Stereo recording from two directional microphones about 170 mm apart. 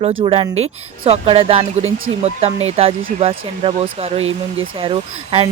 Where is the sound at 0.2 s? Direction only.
30° right (ahead or behind).